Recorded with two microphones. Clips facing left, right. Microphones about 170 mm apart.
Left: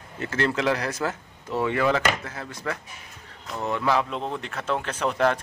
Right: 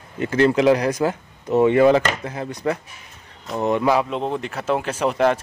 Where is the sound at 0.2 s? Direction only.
15° right (ahead or behind).